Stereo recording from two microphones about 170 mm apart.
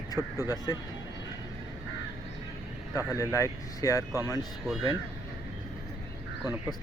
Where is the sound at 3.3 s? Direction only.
15° left (ahead or behind).